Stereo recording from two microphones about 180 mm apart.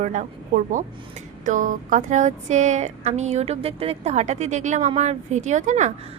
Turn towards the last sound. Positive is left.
turn(degrees=-40)  # may be behind; listen again after turning